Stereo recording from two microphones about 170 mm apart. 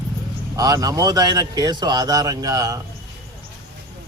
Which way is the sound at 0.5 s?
20° right (ahead or behind).